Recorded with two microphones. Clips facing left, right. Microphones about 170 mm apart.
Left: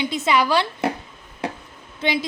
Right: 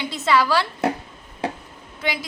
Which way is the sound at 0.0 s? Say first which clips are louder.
Even; 20° left (ahead or behind).